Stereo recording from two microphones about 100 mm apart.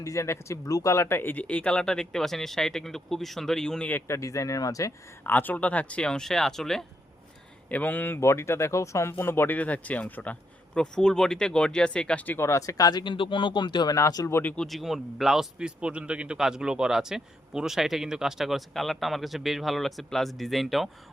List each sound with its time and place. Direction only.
0.0 s speech: 30° left (ahead or behind); by 4.0 s 10° left (ahead or behind)
4.0 s speech: 30° left (ahead or behind)
5.2 s speech: 20° left (ahead or behind)
7.7 s speech: 15° left (ahead or behind)
12.5 s speech: 30° left (ahead or behind); by 13.9 s 45° left (ahead or behind)
13.9 s speech: 35° left (ahead or behind)
14.3 s speech: 25° left (ahead or behind)
14.5 s a man's voice: 5° left (ahead or behind)